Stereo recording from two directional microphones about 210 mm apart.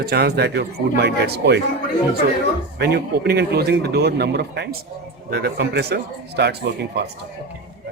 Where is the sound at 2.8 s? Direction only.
50° right (ahead or behind).